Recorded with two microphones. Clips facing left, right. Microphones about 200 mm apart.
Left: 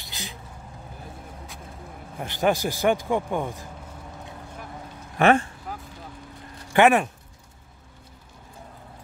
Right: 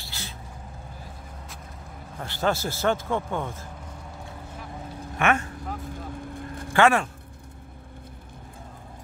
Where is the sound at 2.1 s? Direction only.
15° left (ahead or behind).